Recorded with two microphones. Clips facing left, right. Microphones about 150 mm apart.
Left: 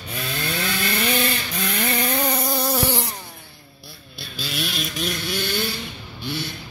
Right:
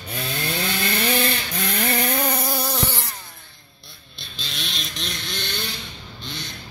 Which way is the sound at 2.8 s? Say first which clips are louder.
Left 4 dB; 15° left (ahead or behind).